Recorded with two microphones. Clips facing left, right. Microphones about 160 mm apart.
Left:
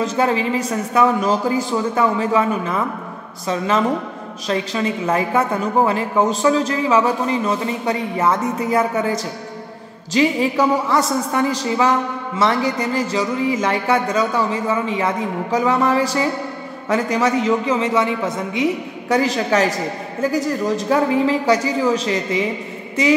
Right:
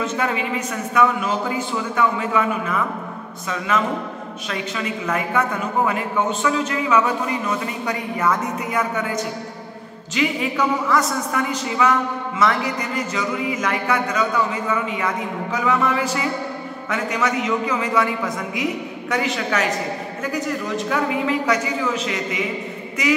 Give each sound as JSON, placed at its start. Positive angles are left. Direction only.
{"t": 0.0, "sound": "a woman's voice", "side_deg": 35}
{"t": 23.0, "sound": "music", "side_deg": 30}